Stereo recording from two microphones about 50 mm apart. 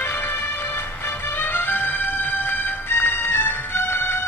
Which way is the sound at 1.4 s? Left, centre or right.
Left.